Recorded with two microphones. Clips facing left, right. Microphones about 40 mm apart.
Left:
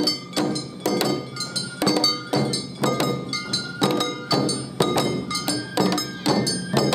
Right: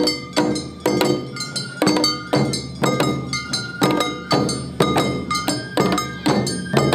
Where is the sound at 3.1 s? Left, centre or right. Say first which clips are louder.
Right 3 dB; right.